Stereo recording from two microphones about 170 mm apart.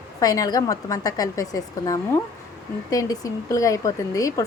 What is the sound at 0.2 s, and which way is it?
A woman's voice, 20° left (ahead or behind).